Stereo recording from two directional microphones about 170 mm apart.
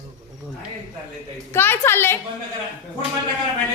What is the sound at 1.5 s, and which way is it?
Speech, 15° left (ahead or behind).